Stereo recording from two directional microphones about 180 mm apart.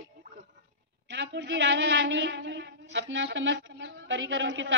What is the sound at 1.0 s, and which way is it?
A woman's voice, 80° right.